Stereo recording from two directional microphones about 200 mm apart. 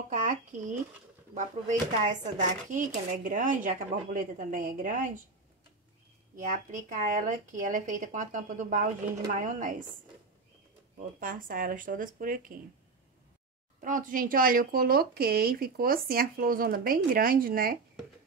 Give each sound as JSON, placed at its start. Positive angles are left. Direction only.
{"t": 0.1, "sound": "speech", "side_deg": -40}
{"t": 6.3, "sound": "speech", "side_deg": -40}
{"t": 11.1, "sound": "a woman's voice", "side_deg": -45}
{"t": 13.8, "sound": "a woman's voice", "side_deg": -40}